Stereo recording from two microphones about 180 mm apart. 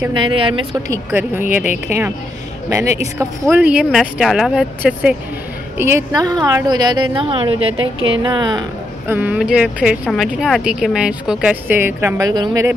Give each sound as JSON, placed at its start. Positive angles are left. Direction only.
{"t": 0.1, "sound": "a woman's voice", "side_deg": -30}
{"t": 0.8, "sound": "speech", "side_deg": -15}
{"t": 5.8, "sound": "a woman's voice", "side_deg": -15}
{"t": 7.7, "sound": "speech", "side_deg": -90}
{"t": 8.2, "sound": "a woman's voice", "side_deg": -25}
{"t": 9.0, "sound": "speech", "side_deg": -10}